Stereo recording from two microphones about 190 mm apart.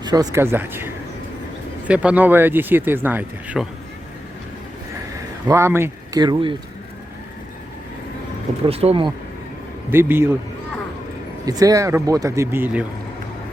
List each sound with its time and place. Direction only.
0.0 s speech: 20° right (ahead or behind)
1.9 s speech: 5° right (ahead or behind)
5.5 s speech: 15° right (ahead or behind)
8.6 s speech: 30° right (ahead or behind)
9.9 s speech: 10° right (ahead or behind)
11.4 s speech: 20° right (ahead or behind)